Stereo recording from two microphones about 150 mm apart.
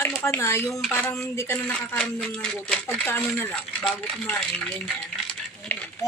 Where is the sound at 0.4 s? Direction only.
20° left (ahead or behind).